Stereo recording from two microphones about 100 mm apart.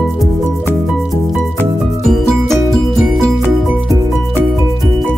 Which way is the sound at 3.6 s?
5° right (ahead or behind).